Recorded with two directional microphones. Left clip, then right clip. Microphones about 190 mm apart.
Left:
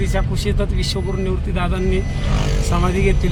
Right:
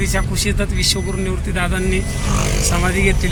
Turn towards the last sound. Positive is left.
turn(degrees=5)  # may be behind; listen again after turning